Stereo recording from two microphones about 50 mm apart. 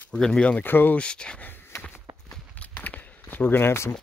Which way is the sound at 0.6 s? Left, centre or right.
Left.